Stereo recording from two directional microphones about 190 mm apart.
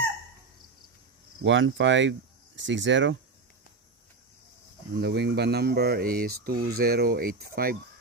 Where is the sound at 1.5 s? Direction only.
75° right (ahead or behind).